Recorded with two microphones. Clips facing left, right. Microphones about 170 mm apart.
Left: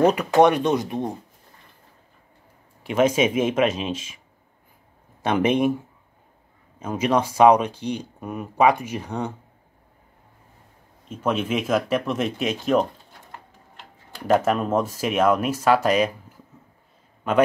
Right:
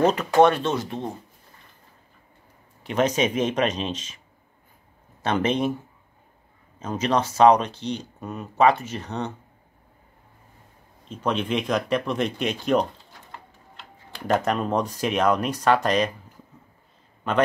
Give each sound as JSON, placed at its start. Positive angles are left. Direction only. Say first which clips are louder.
{"t": 0.0, "sound": "speech", "louder": "left 1 dB", "side_deg": 10}
{"t": 2.8, "sound": "speech", "louder": "left 3 dB", "side_deg": 10}
{"t": 5.2, "sound": "speech", "louder": "left 3 dB", "side_deg": 10}
{"t": 6.8, "sound": "speech", "louder": "left 2 dB", "side_deg": 10}
{"t": 11.1, "sound": "speech", "louder": "left 1 dB", "side_deg": 5}
{"t": 14.2, "sound": "speech", "louder": "left 3 dB", "side_deg": 5}
{"t": 17.3, "sound": "a man's voice", "louder": "left 3 dB", "side_deg": 10}